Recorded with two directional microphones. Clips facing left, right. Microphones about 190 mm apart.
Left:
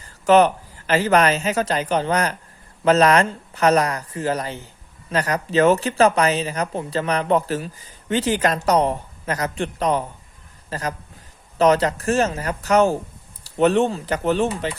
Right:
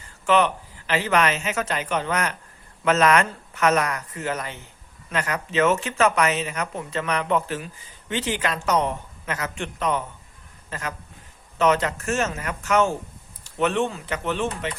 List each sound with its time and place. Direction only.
0.3 s a man's voice: 40° left (ahead or behind)